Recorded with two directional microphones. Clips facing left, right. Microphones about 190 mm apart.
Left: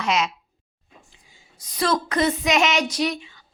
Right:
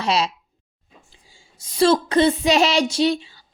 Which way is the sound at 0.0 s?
30° right (ahead or behind).